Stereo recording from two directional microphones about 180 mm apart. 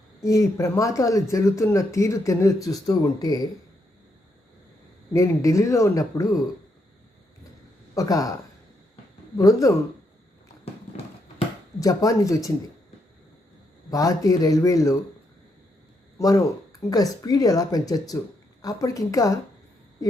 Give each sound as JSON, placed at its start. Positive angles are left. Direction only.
{"t": 0.2, "sound": "speech", "side_deg": 15}
{"t": 5.1, "sound": "speech", "side_deg": 15}
{"t": 7.9, "sound": "speech", "side_deg": 20}
{"t": 9.4, "sound": "speech", "side_deg": 20}
{"t": 10.9, "sound": "horse", "side_deg": 40}
{"t": 11.8, "sound": "speech", "side_deg": 20}
{"t": 13.9, "sound": "speech", "side_deg": 20}
{"t": 16.1, "sound": "speech", "side_deg": 20}